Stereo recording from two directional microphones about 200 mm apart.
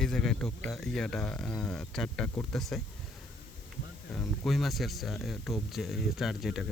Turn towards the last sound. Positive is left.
turn(degrees=0)  # may be behind; listen again after turning